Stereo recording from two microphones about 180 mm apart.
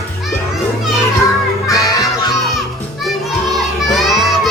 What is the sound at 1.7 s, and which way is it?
Music, 20° left (ahead or behind).